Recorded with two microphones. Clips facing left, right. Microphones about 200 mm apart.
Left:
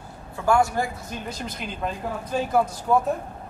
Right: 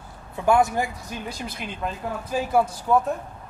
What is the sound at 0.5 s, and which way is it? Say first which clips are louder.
Speech: right 1 dB; 20° right (ahead or behind).